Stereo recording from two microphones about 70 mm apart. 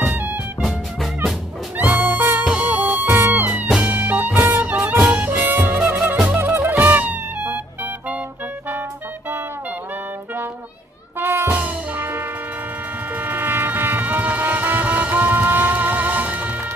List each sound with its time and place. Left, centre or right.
1.8 s music: right
11.1 s music: right
11.5 s music: right